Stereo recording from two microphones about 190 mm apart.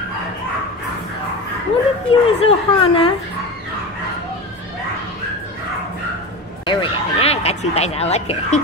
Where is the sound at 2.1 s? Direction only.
30° left (ahead or behind).